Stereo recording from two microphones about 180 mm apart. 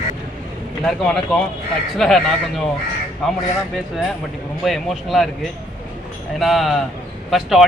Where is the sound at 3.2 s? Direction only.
Centre (ahead or behind).